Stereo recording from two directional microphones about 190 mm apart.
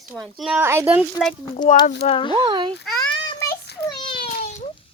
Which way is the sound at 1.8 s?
55° left (ahead or behind).